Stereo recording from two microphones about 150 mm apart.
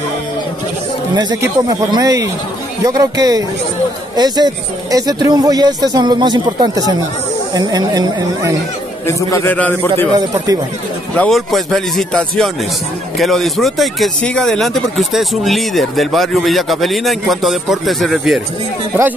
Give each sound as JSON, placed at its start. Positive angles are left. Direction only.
{"t": 1.1, "sound": "speech", "side_deg": -25}
{"t": 9.0, "sound": "a man's voice", "side_deg": 15}
{"t": 10.1, "sound": "speech", "side_deg": -25}
{"t": 11.1, "sound": "speech", "side_deg": 0}